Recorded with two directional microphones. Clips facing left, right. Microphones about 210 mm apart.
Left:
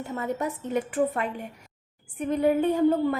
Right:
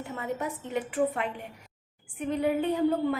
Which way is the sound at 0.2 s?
40° left (ahead or behind).